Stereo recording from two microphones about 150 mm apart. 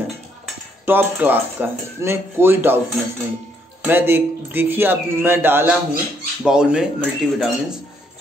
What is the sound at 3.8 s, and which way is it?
Speech, 15° right (ahead or behind).